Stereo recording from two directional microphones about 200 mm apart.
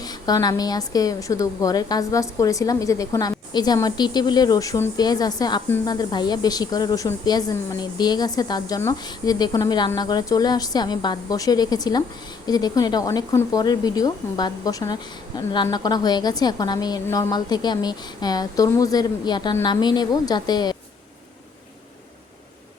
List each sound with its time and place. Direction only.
0.0 s speech: 20° left (ahead or behind)